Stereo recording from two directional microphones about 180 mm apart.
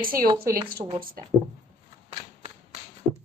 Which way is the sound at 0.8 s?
35° right (ahead or behind).